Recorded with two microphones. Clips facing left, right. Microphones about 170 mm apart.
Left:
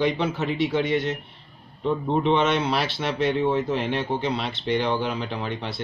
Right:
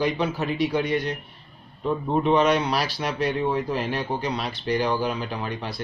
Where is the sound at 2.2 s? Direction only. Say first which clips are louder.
Right 3 dB; 25° left (ahead or behind).